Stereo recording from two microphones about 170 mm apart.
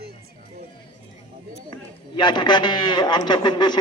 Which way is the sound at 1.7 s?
25° left (ahead or behind).